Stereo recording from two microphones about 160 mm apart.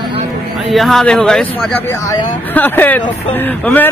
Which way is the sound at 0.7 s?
Centre (ahead or behind).